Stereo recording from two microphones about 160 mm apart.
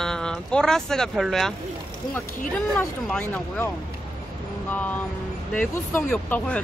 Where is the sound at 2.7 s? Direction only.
5° left (ahead or behind).